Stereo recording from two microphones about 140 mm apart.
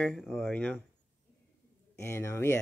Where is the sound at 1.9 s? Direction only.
20° left (ahead or behind).